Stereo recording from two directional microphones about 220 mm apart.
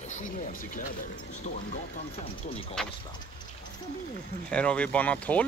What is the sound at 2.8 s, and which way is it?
Speech, centre (ahead or behind).